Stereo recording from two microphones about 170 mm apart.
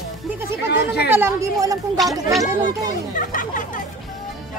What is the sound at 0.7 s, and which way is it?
Speech, 70° left (ahead or behind).